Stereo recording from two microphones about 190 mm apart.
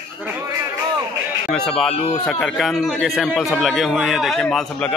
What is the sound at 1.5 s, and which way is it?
A man's voice, 5° left (ahead or behind).